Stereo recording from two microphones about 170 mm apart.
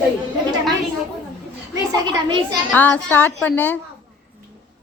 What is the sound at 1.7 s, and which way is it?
Speech, 20° right (ahead or behind).